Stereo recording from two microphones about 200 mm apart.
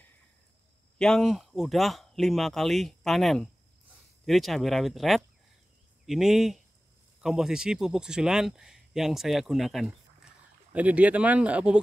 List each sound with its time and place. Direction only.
0.9 s speech: 5° left (ahead or behind)